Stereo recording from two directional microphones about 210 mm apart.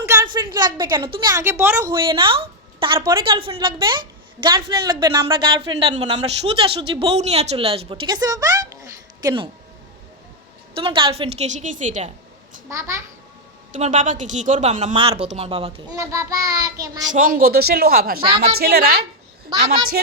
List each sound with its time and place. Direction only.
0.0 s a woman's voice: 10° right (ahead or behind)
1.9 s speech: 25° right (ahead or behind)
10.8 s a woman's voice: 25° right (ahead or behind)
13.7 s a woman's voice: 35° right (ahead or behind)
16.0 s a woman's voice: 15° right (ahead or behind)
17.1 s a man's voice: 40° right (ahead or behind)
19.5 s speech: 25° right (ahead or behind)